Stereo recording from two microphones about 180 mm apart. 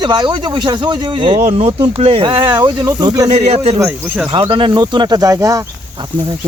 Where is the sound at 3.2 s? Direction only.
35° right (ahead or behind).